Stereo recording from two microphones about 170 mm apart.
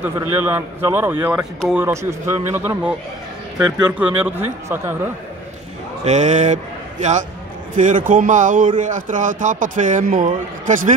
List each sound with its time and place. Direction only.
0.0 s a man's voice: 10° right (ahead or behind)
1.9 s a man's voice: 15° right (ahead or behind)
4.0 s a man's voice: 10° right (ahead or behind)
6.0 s a man's voice: 45° right (ahead or behind)